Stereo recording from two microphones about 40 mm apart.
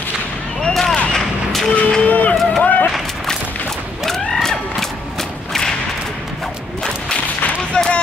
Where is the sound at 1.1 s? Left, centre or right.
Centre.